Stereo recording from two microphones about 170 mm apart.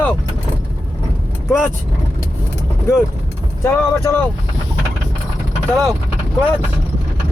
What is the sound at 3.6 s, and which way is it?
Speech, 15° left (ahead or behind).